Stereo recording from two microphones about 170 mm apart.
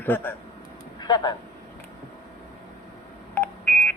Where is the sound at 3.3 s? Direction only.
10° left (ahead or behind).